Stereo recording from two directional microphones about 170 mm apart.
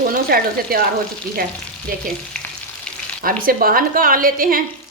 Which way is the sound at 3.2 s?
55° right (ahead or behind).